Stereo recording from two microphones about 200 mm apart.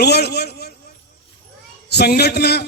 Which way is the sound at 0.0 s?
55° left (ahead or behind).